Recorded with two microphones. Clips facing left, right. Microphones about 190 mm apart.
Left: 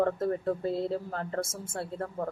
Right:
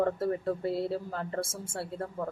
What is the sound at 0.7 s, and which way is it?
Speech, 20° left (ahead or behind).